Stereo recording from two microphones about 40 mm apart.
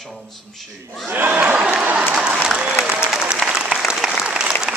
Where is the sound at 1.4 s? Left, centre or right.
Right.